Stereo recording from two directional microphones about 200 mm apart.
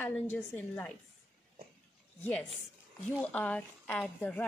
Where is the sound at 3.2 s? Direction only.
5° left (ahead or behind).